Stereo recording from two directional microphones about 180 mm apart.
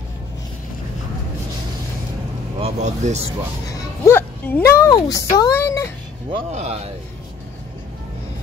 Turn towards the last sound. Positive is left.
turn(degrees=-35)  # may be behind; listen again after turning